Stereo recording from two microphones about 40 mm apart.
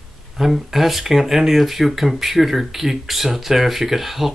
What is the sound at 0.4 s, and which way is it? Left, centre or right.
Speech, centre.